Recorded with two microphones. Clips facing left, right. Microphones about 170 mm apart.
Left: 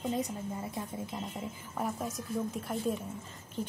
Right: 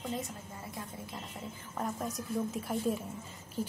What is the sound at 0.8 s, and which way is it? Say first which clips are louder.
Speech: left 5 dB; 20° left (ahead or behind).